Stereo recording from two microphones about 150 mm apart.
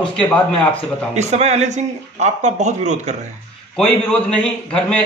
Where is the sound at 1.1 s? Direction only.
50° right (ahead or behind).